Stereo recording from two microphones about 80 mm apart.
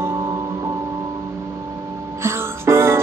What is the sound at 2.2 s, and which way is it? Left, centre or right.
Music, right.